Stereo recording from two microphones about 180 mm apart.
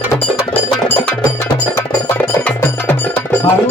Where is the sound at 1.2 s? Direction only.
20° left (ahead or behind).